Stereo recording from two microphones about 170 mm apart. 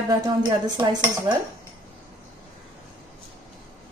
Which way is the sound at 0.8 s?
25° right (ahead or behind).